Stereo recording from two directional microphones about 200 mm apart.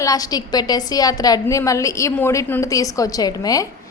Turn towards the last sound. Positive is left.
turn(degrees=15)  # may be behind; listen again after turning